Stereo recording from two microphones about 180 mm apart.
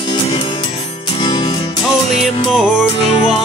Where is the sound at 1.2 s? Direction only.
25° left (ahead or behind).